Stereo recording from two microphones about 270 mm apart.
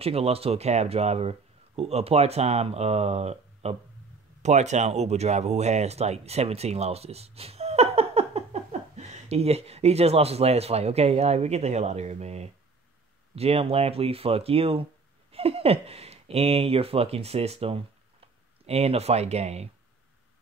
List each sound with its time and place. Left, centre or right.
0.0 s speech: right